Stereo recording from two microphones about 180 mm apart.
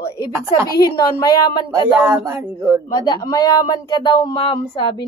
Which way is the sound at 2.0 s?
15° right (ahead or behind).